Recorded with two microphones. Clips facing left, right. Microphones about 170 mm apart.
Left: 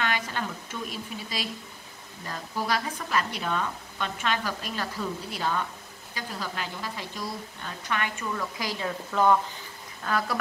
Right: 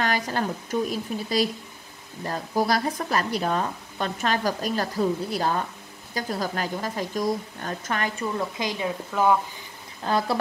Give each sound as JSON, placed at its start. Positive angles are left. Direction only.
{"t": 0.0, "sound": "a woman's voice", "side_deg": -40}
{"t": 8.5, "sound": "a woman's voice", "side_deg": -20}
{"t": 10.0, "sound": "speech", "side_deg": -30}